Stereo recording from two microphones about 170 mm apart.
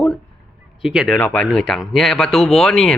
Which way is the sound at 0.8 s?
5° right (ahead or behind).